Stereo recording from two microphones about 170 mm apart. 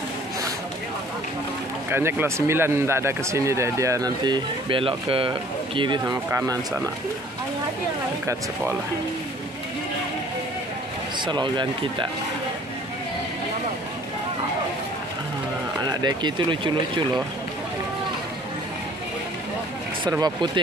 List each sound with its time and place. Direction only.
1.9 s speech: 15° right (ahead or behind)
11.2 s speech: 30° right (ahead or behind)
15.8 s speech: 25° right (ahead or behind)
20.1 s speech: 25° right (ahead or behind)